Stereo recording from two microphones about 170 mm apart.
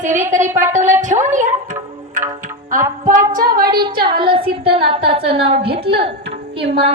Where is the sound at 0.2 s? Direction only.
45° right (ahead or behind).